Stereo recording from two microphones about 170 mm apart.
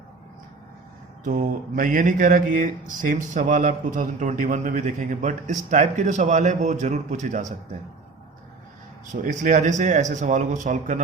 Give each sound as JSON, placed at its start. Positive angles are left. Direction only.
{"t": 1.2, "sound": "mantra", "side_deg": -50}
{"t": 9.2, "sound": "mantra", "side_deg": -50}